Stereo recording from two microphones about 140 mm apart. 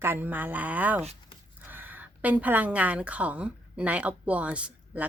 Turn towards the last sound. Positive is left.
turn(degrees=-10)  # may be behind; listen again after turning